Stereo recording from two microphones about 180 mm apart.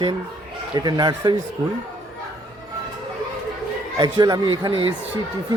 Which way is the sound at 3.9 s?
25° right (ahead or behind).